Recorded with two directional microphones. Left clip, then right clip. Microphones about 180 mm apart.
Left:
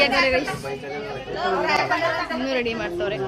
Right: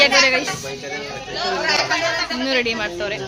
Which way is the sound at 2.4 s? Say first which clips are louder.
Right 4 dB; 20° right (ahead or behind).